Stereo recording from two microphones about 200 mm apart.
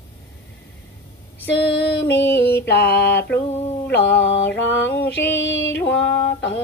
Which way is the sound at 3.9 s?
60° left (ahead or behind).